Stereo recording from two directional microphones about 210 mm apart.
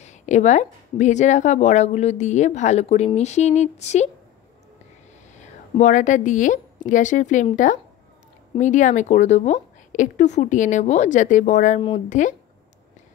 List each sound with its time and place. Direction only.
0.0 s a woman's voice: 35° left (ahead or behind)
5.4 s a woman's voice: 35° left (ahead or behind)